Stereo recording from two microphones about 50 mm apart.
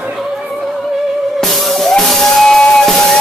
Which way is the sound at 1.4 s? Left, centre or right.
Centre.